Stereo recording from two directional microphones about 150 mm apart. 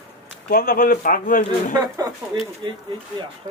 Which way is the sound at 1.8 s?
25° right (ahead or behind).